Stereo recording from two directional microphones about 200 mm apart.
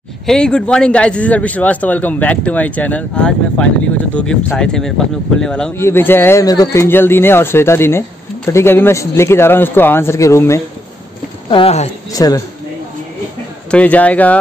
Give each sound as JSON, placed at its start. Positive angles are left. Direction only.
{"t": 0.3, "sound": "a man's voice", "side_deg": 5}
{"t": 11.5, "sound": "speech", "side_deg": 30}
{"t": 12.1, "sound": "a man's voice", "side_deg": 20}
{"t": 13.7, "sound": "a man's voice", "side_deg": 5}